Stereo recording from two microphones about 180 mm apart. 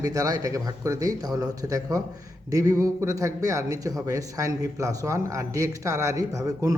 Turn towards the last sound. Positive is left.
turn(degrees=-20)  # may be behind; listen again after turning